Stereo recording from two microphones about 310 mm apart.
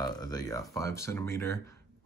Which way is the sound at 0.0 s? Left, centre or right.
Centre.